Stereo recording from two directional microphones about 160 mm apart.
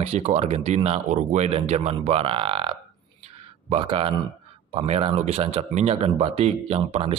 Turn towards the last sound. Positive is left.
turn(degrees=-40)  # may be behind; listen again after turning